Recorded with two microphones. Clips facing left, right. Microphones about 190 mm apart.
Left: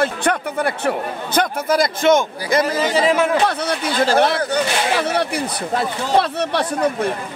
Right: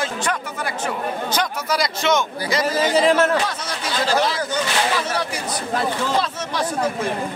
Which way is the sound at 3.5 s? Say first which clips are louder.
Left 6 dB; 60° left (ahead or behind).